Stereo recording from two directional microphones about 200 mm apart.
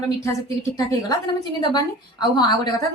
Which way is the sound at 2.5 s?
20° left (ahead or behind).